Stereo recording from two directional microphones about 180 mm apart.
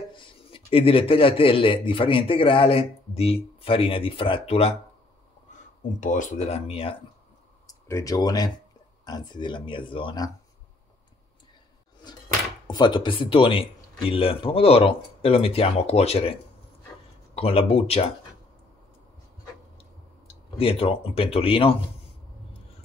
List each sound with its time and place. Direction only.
0.1 s a man's voice: 30° left (ahead or behind)
5.9 s a man's voice: 45° left (ahead or behind)
7.6 s speech: 20° left (ahead or behind)
12.6 s a man's voice: 25° left (ahead or behind)
17.4 s a man's voice: 30° left (ahead or behind)
20.5 s a man's voice: 30° left (ahead or behind)